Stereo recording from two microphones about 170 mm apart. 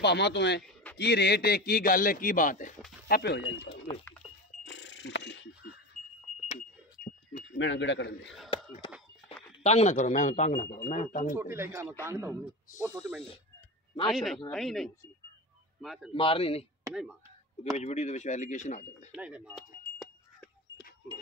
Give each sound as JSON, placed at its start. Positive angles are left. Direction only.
{"t": 0.0, "sound": "a man's voice", "side_deg": 90}
{"t": 0.9, "sound": "a man's voice", "side_deg": 75}
{"t": 3.1, "sound": "speech", "side_deg": 75}
{"t": 4.6, "sound": "music", "side_deg": 90}
{"t": 7.0, "sound": "a sound", "side_deg": -5}
{"t": 7.5, "sound": "a man's voice", "side_deg": 90}
{"t": 9.6, "sound": "speech", "side_deg": 40}
{"t": 11.3, "sound": "a man's voice", "side_deg": -15}
{"t": 14.0, "sound": "speech", "side_deg": 0}
{"t": 16.1, "sound": "a man's voice", "side_deg": 30}
{"t": 17.7, "sound": "speech", "side_deg": 40}
{"t": 19.1, "sound": "a man's voice", "side_deg": -5}
{"t": 20.0, "sound": "a sound", "side_deg": 5}